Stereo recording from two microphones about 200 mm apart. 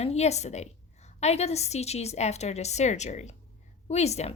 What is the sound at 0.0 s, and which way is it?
Speech, 30° left (ahead or behind).